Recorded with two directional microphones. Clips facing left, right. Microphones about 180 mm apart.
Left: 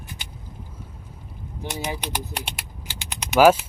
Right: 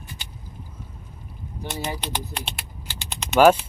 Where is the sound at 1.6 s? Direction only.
15° left (ahead or behind).